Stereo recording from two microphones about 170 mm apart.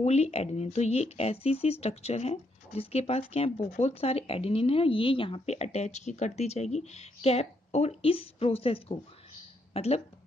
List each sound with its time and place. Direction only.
0.0 s speech: 40° left (ahead or behind)